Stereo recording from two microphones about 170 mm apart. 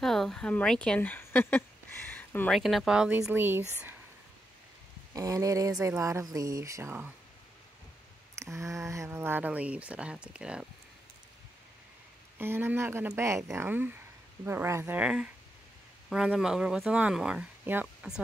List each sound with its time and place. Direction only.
0.0 s a woman's voice: centre (ahead or behind)
5.1 s speech: 20° right (ahead or behind)
8.5 s speech: 15° right (ahead or behind)
12.4 s speech: 15° right (ahead or behind)